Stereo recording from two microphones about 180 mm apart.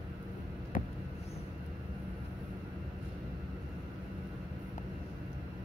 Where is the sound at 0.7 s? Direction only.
50° left (ahead or behind).